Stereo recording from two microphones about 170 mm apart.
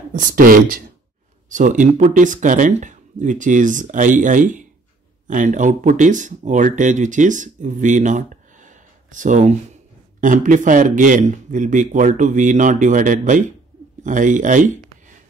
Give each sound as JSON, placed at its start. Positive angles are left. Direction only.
{"t": 0.1, "sound": "speech", "side_deg": -55}